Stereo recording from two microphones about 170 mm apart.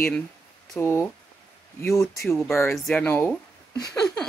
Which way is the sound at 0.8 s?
15° left (ahead or behind).